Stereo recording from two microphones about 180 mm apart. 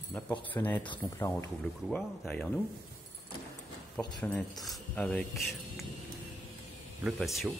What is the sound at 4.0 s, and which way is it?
Speech, 25° left (ahead or behind).